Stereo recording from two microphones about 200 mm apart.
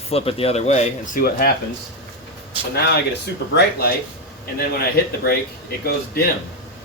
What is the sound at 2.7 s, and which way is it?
Speech, 55° left (ahead or behind).